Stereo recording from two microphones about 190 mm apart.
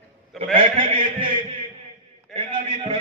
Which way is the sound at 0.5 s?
30° right (ahead or behind).